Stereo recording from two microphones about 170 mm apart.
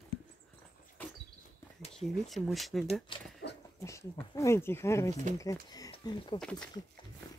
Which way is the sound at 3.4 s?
80° left.